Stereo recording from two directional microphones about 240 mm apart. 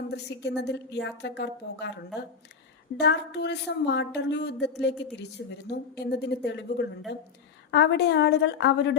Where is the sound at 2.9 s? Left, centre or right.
Left.